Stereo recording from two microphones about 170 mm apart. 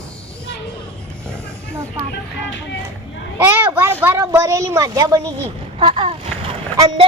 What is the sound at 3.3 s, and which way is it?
Children playing, 10° right (ahead or behind).